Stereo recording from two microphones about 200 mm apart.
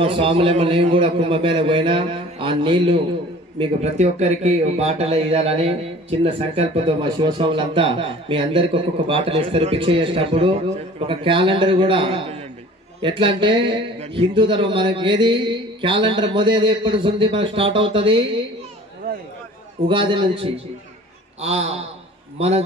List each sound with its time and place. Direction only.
0.0 s speech: 25° right (ahead or behind)
19.9 s speech: 25° right (ahead or behind)